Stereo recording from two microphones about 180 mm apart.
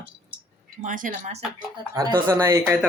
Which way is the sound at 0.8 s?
45° right (ahead or behind).